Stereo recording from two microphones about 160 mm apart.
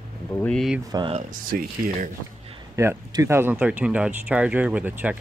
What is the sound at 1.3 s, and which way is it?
Speech, 60° right (ahead or behind).